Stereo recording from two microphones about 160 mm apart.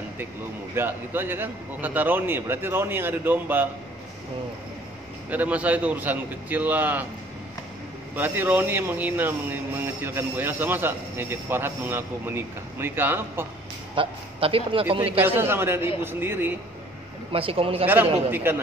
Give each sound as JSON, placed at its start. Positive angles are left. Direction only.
{"t": 0.7, "sound": "speech", "side_deg": -15}
{"t": 5.3, "sound": "speech", "side_deg": -10}
{"t": 8.2, "sound": "speech", "side_deg": -10}
{"t": 13.9, "sound": "a man's voice", "side_deg": -35}
{"t": 15.2, "sound": "speech", "side_deg": -15}
{"t": 17.3, "sound": "a man's voice", "side_deg": -35}
{"t": 17.8, "sound": "speech", "side_deg": -10}